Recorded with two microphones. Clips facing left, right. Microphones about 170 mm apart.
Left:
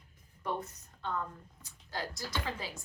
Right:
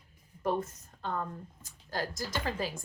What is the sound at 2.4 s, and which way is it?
Speech, 45° right (ahead or behind).